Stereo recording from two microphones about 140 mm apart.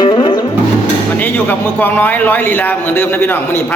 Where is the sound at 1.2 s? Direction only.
15° left (ahead or behind).